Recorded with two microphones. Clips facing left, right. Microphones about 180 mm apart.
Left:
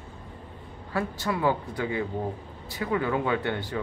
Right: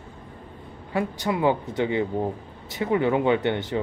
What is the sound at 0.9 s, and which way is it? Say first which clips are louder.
Speech: right 3 dB; 20° right (ahead or behind).